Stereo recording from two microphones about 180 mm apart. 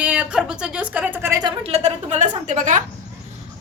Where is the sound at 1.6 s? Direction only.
35° right (ahead or behind).